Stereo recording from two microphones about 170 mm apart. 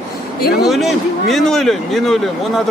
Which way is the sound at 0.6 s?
Centre (ahead or behind).